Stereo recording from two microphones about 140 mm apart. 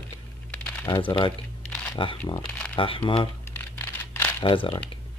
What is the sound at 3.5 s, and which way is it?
Computer keyboard, 15° left (ahead or behind).